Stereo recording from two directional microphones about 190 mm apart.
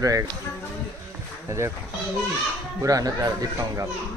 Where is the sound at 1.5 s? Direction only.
15° right (ahead or behind).